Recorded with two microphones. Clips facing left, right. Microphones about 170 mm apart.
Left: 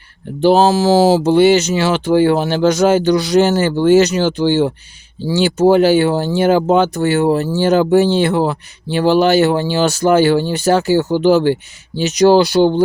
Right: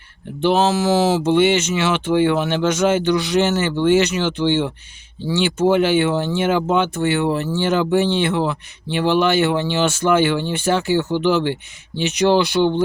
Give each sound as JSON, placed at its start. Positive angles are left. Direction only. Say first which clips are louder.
{"t": 0.4, "sound": "speech", "louder": "left 5 dB", "side_deg": 35}